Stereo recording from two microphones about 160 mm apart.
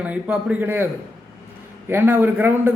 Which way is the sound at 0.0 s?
10° right (ahead or behind).